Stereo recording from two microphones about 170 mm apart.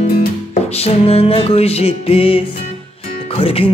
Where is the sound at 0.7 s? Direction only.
35° left (ahead or behind).